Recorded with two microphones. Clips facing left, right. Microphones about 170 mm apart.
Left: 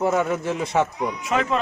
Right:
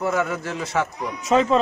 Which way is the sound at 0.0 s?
25° left (ahead or behind).